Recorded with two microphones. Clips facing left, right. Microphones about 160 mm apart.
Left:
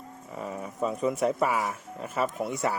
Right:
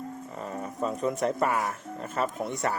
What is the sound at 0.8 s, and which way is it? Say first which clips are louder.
Speech: left 1 dB; 5° left (ahead or behind).